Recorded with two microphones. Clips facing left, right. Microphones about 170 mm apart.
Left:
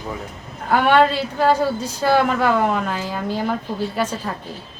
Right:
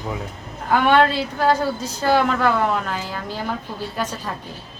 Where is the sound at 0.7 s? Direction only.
10° left (ahead or behind).